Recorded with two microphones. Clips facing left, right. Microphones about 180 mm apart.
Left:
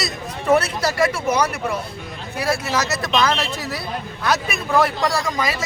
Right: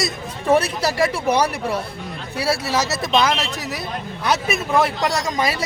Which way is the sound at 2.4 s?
30° right (ahead or behind).